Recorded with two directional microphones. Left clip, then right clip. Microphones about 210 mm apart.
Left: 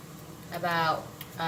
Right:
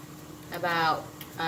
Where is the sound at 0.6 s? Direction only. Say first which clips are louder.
Right 1 dB; 35° right (ahead or behind).